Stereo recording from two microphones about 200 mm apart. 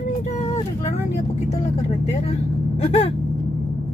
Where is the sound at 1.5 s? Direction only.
35° left (ahead or behind).